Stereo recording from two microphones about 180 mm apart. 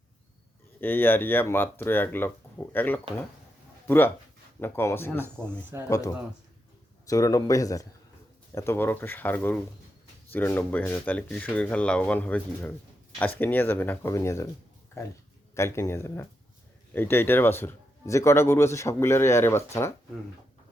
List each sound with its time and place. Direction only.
0.8 s speech: 10° left (ahead or behind)